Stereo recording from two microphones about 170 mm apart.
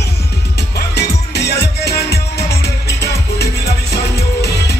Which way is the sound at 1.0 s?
75° left (ahead or behind).